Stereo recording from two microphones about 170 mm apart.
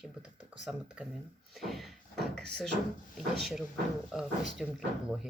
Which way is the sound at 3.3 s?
Centre (ahead or behind).